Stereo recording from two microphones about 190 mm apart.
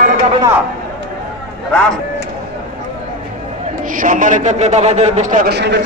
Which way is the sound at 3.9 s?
45° right (ahead or behind).